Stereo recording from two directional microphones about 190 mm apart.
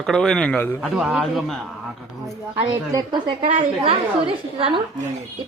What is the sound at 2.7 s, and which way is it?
A woman's voice, 20° right (ahead or behind).